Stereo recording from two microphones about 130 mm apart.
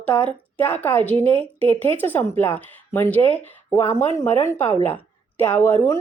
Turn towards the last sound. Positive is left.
turn(degrees=20)  # may be behind; listen again after turning